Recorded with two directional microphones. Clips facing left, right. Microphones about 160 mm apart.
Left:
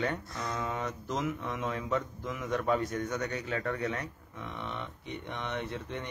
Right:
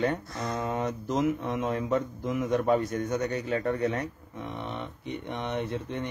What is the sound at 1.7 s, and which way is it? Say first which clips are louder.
Mantra: right 5 dB; 35° right (ahead or behind).